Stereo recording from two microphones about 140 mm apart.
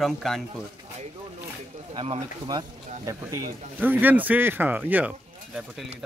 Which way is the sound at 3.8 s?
15° right (ahead or behind).